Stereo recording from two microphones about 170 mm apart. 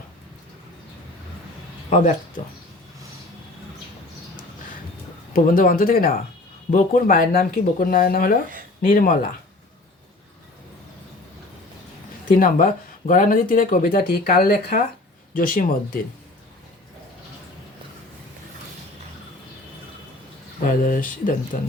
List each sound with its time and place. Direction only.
1.9 s speech: 45° left (ahead or behind)
5.3 s speech: 55° left (ahead or behind)
12.3 s speech: 55° left (ahead or behind)
20.7 s speech: 50° left (ahead or behind)